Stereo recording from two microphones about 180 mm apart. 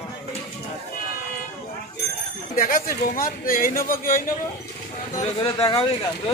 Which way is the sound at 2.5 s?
50° left (ahead or behind).